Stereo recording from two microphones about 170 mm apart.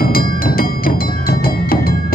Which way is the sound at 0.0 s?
60° left (ahead or behind).